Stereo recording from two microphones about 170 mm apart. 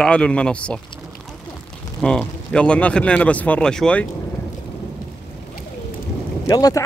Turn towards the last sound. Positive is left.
turn(degrees=20)  # may be behind; listen again after turning